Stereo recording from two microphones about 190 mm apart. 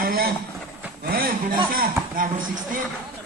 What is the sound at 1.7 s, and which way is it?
Speech, 50° right (ahead or behind).